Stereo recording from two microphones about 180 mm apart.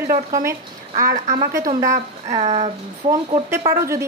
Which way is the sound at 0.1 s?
50° right (ahead or behind).